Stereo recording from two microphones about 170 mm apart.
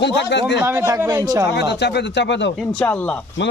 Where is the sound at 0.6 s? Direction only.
15° right (ahead or behind).